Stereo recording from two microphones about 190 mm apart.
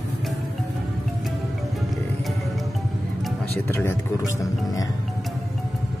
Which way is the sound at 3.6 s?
10° left (ahead or behind).